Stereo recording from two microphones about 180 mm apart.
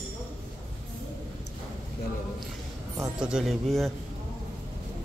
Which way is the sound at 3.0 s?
5° right (ahead or behind).